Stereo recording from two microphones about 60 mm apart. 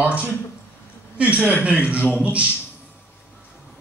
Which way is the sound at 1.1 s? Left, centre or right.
Right.